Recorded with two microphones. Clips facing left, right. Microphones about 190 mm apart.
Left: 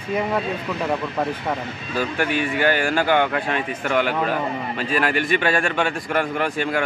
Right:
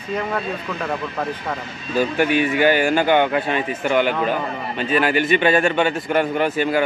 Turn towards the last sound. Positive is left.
turn(degrees=-5)  # may be behind; listen again after turning